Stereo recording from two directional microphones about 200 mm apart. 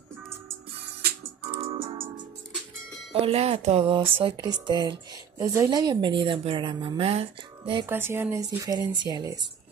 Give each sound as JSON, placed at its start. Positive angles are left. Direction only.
{"t": 1.5, "sound": "music", "side_deg": -30}
{"t": 3.1, "sound": "a woman's voice", "side_deg": -30}
{"t": 7.8, "sound": "speech", "side_deg": -10}